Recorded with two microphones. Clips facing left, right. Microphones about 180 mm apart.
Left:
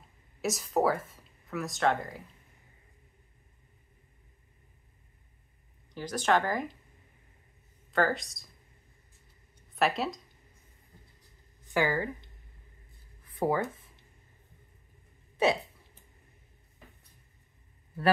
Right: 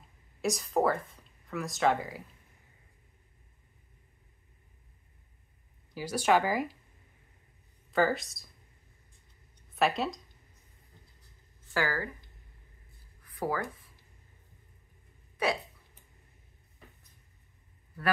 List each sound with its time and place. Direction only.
0.4 s speech: centre (ahead or behind)
5.9 s speech: 10° right (ahead or behind)
7.9 s speech: centre (ahead or behind)
9.8 s speech: centre (ahead or behind)
11.6 s speech: 20° left (ahead or behind)
13.2 s a sound: 25° left (ahead or behind)
15.3 s hiccup: 25° left (ahead or behind)